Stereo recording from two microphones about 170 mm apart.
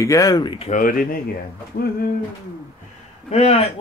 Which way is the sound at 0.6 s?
50° left (ahead or behind).